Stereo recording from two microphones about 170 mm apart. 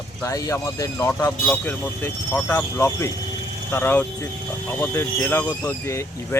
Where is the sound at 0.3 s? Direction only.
20° left (ahead or behind).